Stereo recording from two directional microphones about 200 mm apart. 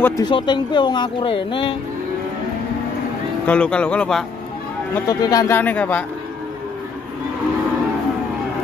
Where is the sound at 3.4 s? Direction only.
5° left (ahead or behind).